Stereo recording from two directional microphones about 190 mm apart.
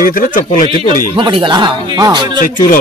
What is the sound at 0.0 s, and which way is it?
Speech, 45° left (ahead or behind).